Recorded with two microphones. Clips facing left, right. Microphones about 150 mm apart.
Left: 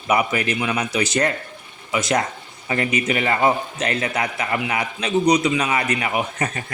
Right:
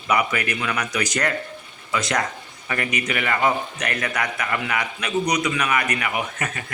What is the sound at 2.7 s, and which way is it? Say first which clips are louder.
A man's voice: left 4 dB; 25° left (ahead or behind).